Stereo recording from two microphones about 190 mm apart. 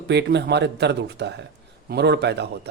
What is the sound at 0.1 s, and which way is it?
A man's voice, 60° right (ahead or behind).